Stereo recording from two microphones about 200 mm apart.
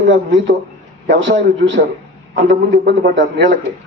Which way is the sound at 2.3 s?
45° right (ahead or behind).